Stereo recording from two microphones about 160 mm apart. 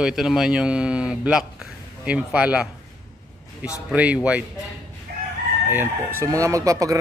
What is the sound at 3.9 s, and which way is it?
Speech, 10° right (ahead or behind).